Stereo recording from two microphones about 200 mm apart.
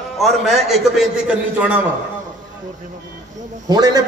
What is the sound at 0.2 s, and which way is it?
A man's voice, centre (ahead or behind).